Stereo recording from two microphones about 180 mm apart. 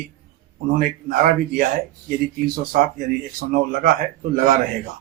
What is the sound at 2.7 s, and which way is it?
Speech, 50° right (ahead or behind).